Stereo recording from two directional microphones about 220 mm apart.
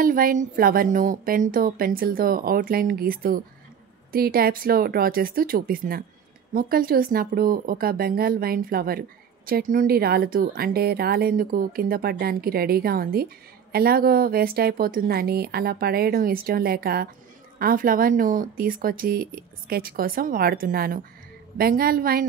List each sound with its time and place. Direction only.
0.0 s speech: 40° right (ahead or behind)